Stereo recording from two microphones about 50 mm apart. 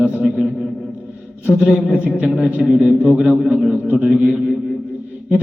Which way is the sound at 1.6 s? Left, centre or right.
Centre.